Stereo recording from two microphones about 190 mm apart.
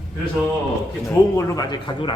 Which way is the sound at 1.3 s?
20° left (ahead or behind).